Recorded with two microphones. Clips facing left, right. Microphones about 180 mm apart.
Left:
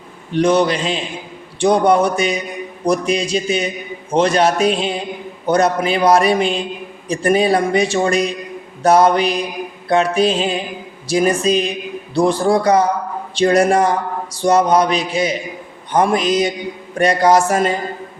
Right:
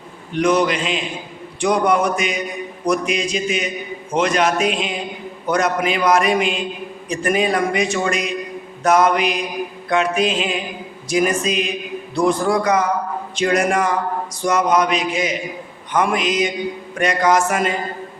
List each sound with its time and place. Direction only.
0.3 s a man's voice: 30° left (ahead or behind)